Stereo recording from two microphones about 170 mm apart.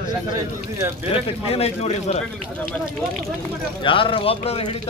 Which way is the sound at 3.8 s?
30° left (ahead or behind).